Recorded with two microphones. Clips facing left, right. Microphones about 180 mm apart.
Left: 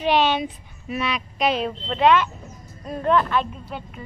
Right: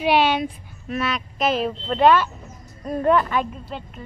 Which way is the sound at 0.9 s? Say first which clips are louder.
Right 1 dB; centre (ahead or behind).